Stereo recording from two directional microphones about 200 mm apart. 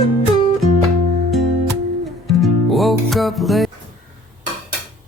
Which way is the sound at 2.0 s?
Centre (ahead or behind).